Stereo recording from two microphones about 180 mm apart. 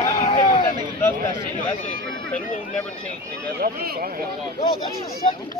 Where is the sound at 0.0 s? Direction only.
25° left (ahead or behind).